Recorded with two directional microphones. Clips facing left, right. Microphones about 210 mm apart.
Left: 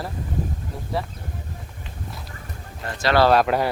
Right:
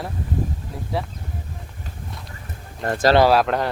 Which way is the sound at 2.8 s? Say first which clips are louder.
Right 7 dB; 50° right (ahead or behind).